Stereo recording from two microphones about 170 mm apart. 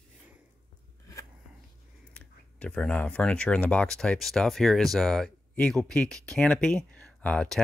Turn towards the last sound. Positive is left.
turn(degrees=5)  # may be behind; listen again after turning